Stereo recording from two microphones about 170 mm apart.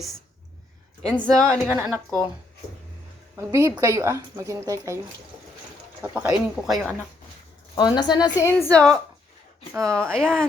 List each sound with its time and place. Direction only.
1.0 s speech: 5° left (ahead or behind)
1.5 s speech: 10° right (ahead or behind)
1.9 s speech: centre (ahead or behind)
3.3 s speech: 20° right (ahead or behind)
6.0 s speech: 10° right (ahead or behind)
7.8 s a woman's voice: 25° left (ahead or behind)
8.6 s speech: 5° left (ahead or behind)
10.0 s speech: 5° left (ahead or behind)